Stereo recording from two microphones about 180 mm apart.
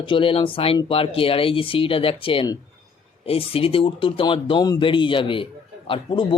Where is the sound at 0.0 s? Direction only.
30° left (ahead or behind).